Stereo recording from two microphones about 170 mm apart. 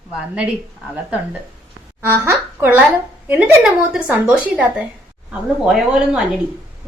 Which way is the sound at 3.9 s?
5° right (ahead or behind).